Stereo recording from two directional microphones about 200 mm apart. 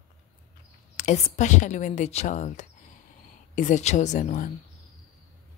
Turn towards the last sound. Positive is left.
turn(degrees=40)  # may be behind; listen again after turning